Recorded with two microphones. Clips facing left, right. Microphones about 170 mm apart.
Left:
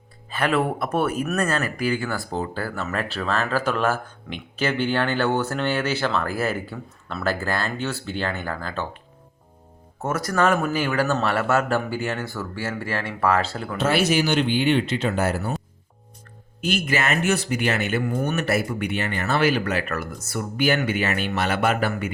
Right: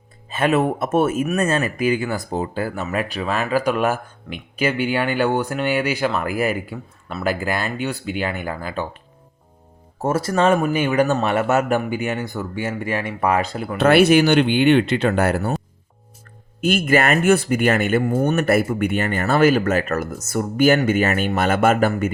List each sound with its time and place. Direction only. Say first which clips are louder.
0.3 s speech: right 4 dB; 20° right (ahead or behind)
10.0 s speech: right 4 dB; 30° right (ahead or behind)
13.7 s speech: right 8 dB; 60° right (ahead or behind)
16.6 s speech: right 6 dB; 50° right (ahead or behind)
18.2 s speech: right 6 dB; 40° right (ahead or behind)
18.4 s speech: right 6 dB; 50° right (ahead or behind)